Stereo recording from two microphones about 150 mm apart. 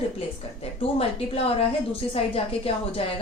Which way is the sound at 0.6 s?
40° left (ahead or behind).